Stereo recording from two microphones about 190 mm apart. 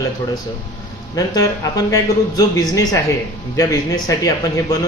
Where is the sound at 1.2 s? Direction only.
20° left (ahead or behind).